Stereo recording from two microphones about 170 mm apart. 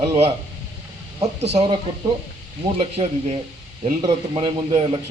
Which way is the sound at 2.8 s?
35° right (ahead or behind).